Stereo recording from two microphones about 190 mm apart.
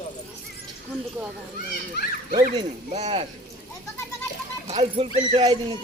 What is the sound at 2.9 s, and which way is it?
Speech, 35° right (ahead or behind).